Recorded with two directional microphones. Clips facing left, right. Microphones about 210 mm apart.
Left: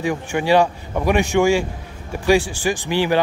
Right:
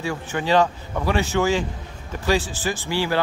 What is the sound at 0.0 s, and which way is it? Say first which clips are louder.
Speech: left 5 dB; 15° left (ahead or behind).